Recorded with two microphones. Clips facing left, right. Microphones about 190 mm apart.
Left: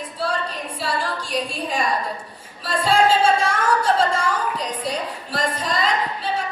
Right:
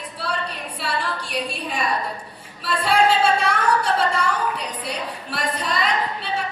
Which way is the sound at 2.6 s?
65° right (ahead or behind).